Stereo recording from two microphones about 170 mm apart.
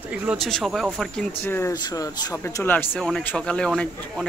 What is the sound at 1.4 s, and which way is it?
Speech, 15° left (ahead or behind).